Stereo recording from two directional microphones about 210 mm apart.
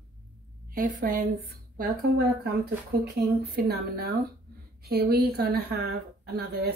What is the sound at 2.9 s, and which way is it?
A woman's voice, 45° right (ahead or behind).